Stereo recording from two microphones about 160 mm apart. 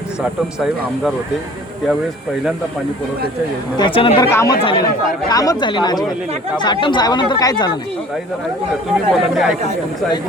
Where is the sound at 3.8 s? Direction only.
30° left (ahead or behind).